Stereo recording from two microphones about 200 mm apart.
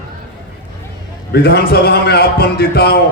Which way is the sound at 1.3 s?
50° left (ahead or behind).